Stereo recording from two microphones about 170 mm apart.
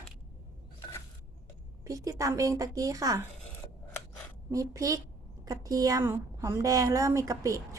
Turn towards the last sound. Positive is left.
turn(degrees=-20)  # may be behind; listen again after turning